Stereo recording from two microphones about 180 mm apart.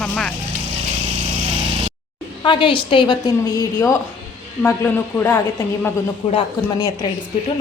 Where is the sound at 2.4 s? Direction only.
25° left (ahead or behind).